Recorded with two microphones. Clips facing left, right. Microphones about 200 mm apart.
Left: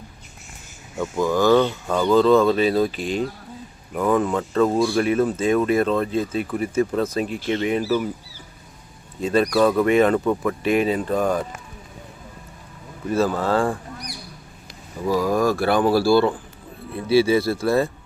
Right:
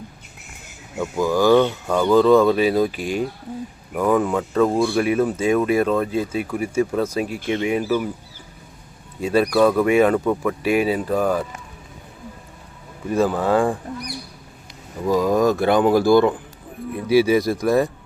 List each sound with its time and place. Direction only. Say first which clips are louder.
0.9 s speech: right 1 dB; 5° right (ahead or behind)
9.2 s speech: right 1 dB; 10° right (ahead or behind)
9.6 s speech: right 2 dB; centre (ahead or behind)
9.8 s speech: right 1 dB; 10° right (ahead or behind)
13.1 s speech: right 2 dB; 15° right (ahead or behind)
15.1 s speech: right 2 dB; 20° right (ahead or behind)